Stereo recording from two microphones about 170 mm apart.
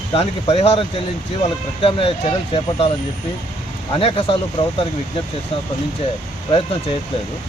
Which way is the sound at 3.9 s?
30° left (ahead or behind).